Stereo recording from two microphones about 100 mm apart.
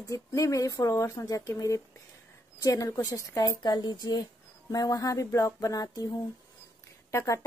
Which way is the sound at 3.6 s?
45° left (ahead or behind).